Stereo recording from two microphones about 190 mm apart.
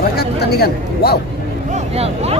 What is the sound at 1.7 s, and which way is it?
Speech, 35° right (ahead or behind).